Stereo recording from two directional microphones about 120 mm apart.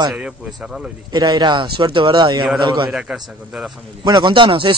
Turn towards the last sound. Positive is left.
turn(degrees=-45)  # may be behind; listen again after turning